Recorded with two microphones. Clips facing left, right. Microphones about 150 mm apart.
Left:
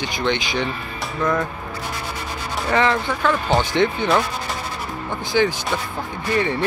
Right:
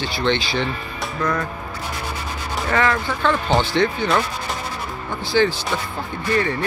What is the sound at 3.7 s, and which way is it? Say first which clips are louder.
Speech: even; 20° left (ahead or behind).